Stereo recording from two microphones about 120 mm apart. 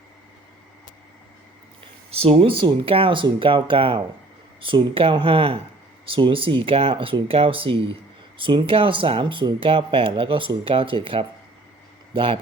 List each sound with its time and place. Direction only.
2.0 s speech: 55° right (ahead or behind)